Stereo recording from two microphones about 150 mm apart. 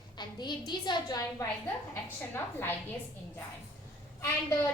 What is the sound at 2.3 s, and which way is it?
Speech, 15° left (ahead or behind).